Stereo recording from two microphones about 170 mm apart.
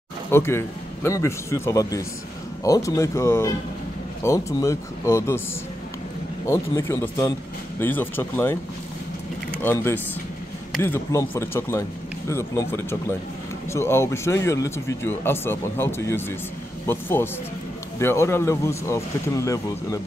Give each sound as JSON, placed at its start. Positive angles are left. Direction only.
{"t": 0.3, "sound": "speech", "side_deg": 15}
{"t": 6.4, "sound": "speech", "side_deg": 15}
{"t": 9.6, "sound": "speech", "side_deg": 15}